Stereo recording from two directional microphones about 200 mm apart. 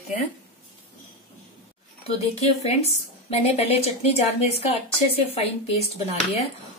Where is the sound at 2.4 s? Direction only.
30° left (ahead or behind).